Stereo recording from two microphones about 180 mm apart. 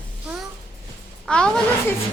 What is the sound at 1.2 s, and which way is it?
Speech, 5° left (ahead or behind).